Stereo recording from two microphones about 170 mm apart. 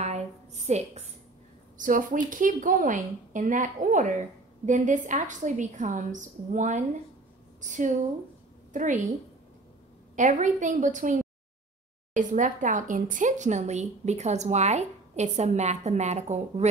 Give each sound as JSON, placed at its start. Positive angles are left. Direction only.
{"t": 0.0, "sound": "a sound", "side_deg": -40}
{"t": 1.8, "sound": "a woman's voice", "side_deg": -50}
{"t": 10.1, "sound": "a woman's voice", "side_deg": -45}